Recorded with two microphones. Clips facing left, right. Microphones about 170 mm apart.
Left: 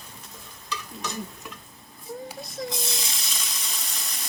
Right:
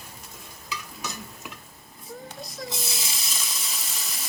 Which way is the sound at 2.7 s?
5° right (ahead or behind).